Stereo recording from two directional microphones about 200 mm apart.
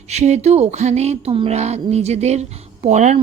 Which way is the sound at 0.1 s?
35° right (ahead or behind).